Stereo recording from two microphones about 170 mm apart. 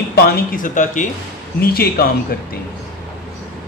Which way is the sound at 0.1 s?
65° left (ahead or behind).